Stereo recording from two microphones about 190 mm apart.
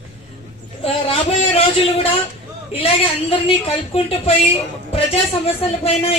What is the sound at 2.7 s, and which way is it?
Speech, 30° left (ahead or behind).